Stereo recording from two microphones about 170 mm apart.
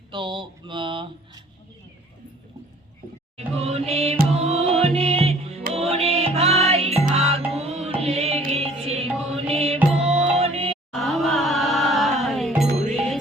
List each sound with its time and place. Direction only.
0.1 s a sound: 30° right (ahead or behind)
3.3 s music: 35° right (ahead or behind)
9.7 s music: 5° right (ahead or behind)
10.4 s music: 35° right (ahead or behind)
10.9 s music: centre (ahead or behind)